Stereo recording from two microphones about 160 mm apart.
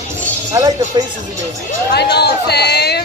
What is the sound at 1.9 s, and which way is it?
Speech, 90° left.